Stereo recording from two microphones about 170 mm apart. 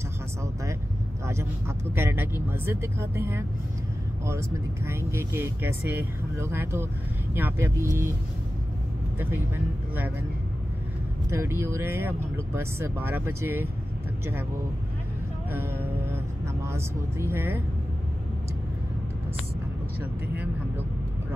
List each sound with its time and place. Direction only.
1.2 s a sound: 15° right (ahead or behind)
2.0 s speech: 15° right (ahead or behind)
11.2 s speech: 15° right (ahead or behind)
16.6 s speech: 15° right (ahead or behind)